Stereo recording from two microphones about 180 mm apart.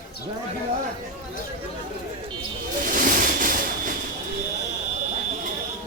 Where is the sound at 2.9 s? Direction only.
50° right (ahead or behind).